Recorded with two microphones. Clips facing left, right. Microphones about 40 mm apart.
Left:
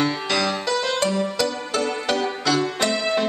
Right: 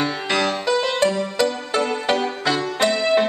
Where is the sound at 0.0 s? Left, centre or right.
Right.